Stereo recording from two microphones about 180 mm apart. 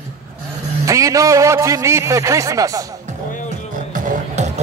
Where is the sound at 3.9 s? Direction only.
45° right (ahead or behind).